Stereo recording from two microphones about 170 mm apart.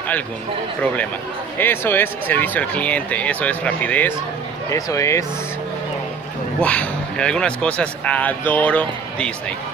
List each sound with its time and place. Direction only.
1.6 s speech: 10° left (ahead or behind)
6.6 s speech: 5° left (ahead or behind)